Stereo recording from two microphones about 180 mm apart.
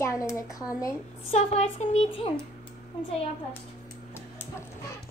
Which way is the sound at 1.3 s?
35° left (ahead or behind).